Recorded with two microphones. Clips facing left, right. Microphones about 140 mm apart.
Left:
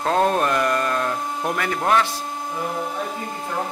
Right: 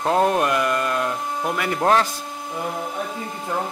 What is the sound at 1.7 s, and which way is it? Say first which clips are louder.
Speech: right 2 dB; 30° right (ahead or behind).